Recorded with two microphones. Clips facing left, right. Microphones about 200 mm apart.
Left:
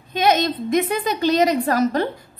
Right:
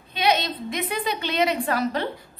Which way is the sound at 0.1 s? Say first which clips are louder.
Left 5 dB; 45° left (ahead or behind).